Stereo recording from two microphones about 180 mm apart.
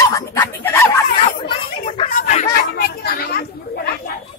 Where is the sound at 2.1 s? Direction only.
45° left (ahead or behind).